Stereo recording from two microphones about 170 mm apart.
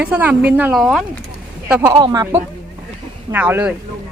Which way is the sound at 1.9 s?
25° right (ahead or behind).